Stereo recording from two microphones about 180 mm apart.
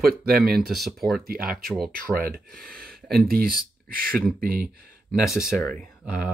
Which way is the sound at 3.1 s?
55° right (ahead or behind).